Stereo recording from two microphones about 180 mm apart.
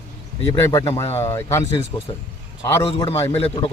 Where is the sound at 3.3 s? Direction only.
30° left (ahead or behind).